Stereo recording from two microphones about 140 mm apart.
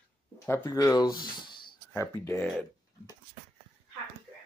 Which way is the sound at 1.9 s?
15° left (ahead or behind).